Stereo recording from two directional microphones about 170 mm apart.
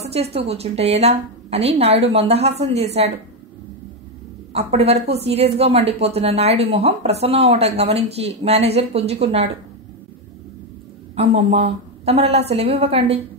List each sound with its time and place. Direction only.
0.0 s speech: 35° right (ahead or behind)
4.5 s speech: 40° right (ahead or behind)
11.1 s speech: 35° right (ahead or behind)